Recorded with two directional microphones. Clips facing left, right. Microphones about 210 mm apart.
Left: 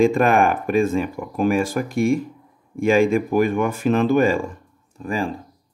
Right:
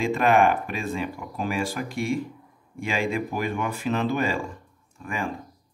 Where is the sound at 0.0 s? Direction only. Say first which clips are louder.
Left 4 dB; 45° left (ahead or behind).